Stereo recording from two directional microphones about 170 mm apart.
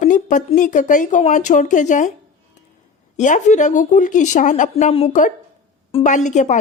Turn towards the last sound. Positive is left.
turn(degrees=45)  # may be behind; listen again after turning